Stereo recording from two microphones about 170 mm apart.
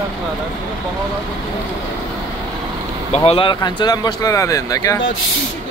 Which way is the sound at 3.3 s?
30° left (ahead or behind).